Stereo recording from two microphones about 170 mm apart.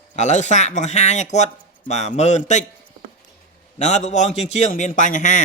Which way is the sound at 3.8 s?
45° left (ahead or behind).